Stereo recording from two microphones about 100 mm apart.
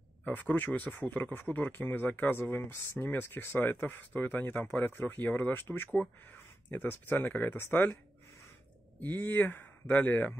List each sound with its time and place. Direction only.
0.2 s speech: 15° left (ahead or behind)
9.0 s speech: 20° left (ahead or behind)